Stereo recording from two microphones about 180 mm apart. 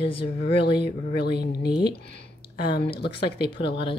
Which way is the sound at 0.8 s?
65° left (ahead or behind).